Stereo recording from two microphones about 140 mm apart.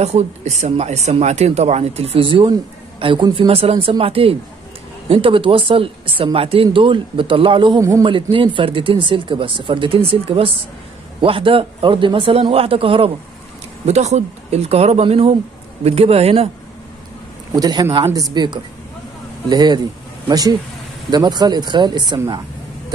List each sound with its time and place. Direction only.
0.0 s speech: 55° right (ahead or behind)
13.8 s speech: 55° right (ahead or behind)
17.5 s speech: 30° right (ahead or behind)